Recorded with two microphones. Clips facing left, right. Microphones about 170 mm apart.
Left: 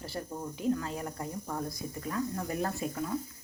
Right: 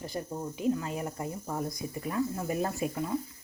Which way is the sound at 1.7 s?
20° right (ahead or behind).